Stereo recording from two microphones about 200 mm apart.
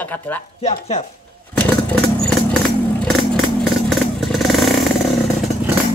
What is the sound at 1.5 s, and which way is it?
Vehicle, 5° left (ahead or behind).